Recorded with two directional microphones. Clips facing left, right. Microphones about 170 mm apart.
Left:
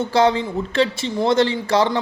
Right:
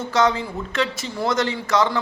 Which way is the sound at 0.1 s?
30° left (ahead or behind).